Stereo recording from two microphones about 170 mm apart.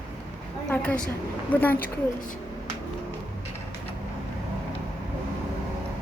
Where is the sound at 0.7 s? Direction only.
10° left (ahead or behind).